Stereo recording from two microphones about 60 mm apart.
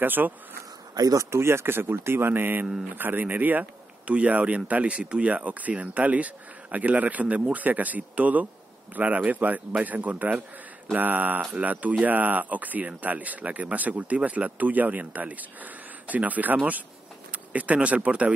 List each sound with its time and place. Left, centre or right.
0.0 s speech: right
0.9 s speech: right
1.3 s speech: right